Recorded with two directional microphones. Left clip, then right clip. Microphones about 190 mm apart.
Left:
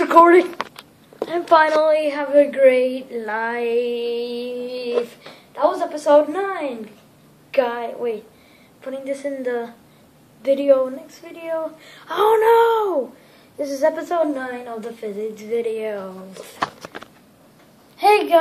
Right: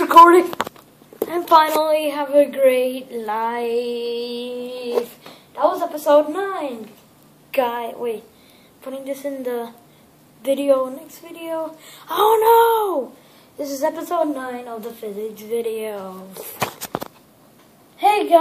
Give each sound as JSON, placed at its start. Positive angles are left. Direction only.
{"t": 0.0, "sound": "a sound", "side_deg": 0}
{"t": 1.2, "sound": "a woman's voice", "side_deg": -5}
{"t": 4.0, "sound": "music", "side_deg": 20}
{"t": 4.4, "sound": "a woman's voice", "side_deg": -5}
{"t": 7.5, "sound": "a woman's voice", "side_deg": -15}
{"t": 8.8, "sound": "a woman's voice", "side_deg": 0}
{"t": 10.8, "sound": "a woman's voice", "side_deg": 5}
{"t": 17.9, "sound": "a woman's voice", "side_deg": 40}